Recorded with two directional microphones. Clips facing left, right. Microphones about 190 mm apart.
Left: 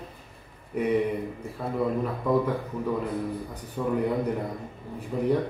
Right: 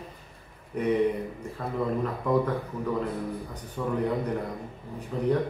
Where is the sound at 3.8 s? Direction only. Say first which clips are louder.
Left 2 dB; 10° left (ahead or behind).